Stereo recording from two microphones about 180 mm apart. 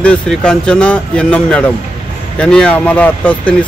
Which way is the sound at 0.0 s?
5° left (ahead or behind).